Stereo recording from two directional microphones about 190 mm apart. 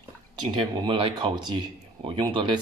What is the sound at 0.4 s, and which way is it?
Speech, 25° right (ahead or behind).